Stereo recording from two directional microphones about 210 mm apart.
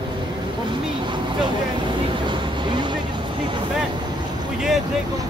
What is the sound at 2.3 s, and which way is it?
Vehicle, 20° right (ahead or behind).